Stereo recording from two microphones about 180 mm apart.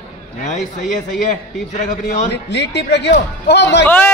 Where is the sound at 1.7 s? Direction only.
40° left (ahead or behind).